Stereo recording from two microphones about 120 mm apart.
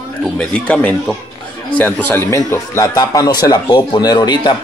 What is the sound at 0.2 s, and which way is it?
Speech, 10° left (ahead or behind).